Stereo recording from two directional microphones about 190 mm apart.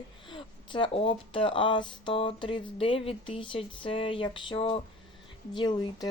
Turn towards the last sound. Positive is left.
turn(degrees=25)  # may be behind; listen again after turning